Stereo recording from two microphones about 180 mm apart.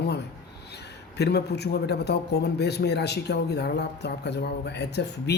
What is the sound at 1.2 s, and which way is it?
A man's voice, 65° left (ahead or behind).